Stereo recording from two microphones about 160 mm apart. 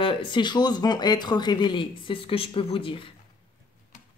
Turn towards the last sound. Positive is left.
turn(degrees=35)  # may be behind; listen again after turning